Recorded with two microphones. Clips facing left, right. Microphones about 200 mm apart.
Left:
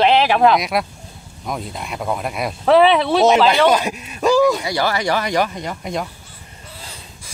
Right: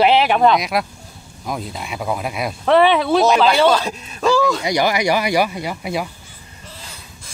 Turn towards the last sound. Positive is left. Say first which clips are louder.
# right 1 dB
turn(degrees=-5)  # may be behind; listen again after turning